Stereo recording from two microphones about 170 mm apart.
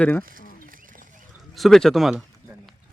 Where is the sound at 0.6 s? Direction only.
55° right (ahead or behind).